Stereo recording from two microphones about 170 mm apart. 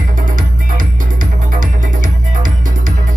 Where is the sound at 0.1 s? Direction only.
50° right (ahead or behind).